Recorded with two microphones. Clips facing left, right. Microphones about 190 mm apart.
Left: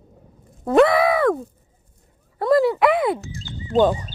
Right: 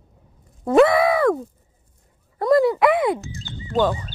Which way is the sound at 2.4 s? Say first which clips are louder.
Even; centre (ahead or behind).